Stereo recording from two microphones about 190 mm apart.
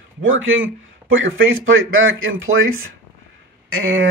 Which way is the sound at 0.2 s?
90° right.